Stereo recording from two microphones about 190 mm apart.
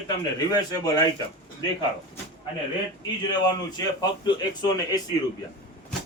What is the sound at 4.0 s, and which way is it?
A man's voice, 20° left (ahead or behind).